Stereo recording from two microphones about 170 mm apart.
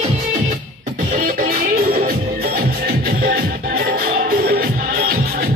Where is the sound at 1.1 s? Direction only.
55° right (ahead or behind).